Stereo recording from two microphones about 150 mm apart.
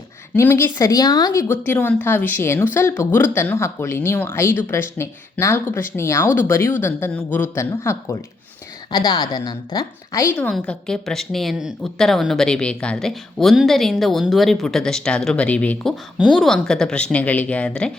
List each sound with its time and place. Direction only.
0.3 s a woman's voice: 15° left (ahead or behind)
10.3 s a woman's voice: 5° left (ahead or behind)